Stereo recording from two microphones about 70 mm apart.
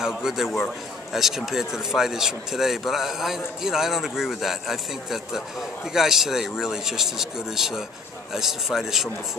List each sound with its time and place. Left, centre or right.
0.0 s speech: centre